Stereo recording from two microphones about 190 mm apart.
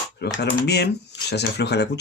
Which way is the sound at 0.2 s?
60° left (ahead or behind).